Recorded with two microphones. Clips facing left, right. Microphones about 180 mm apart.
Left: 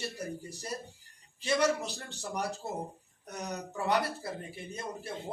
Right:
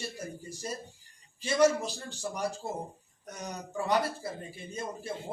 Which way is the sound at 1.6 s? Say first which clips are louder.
Right 5 dB; 65° left (ahead or behind).